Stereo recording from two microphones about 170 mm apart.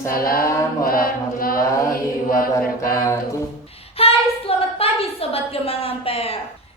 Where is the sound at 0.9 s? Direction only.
60° left (ahead or behind).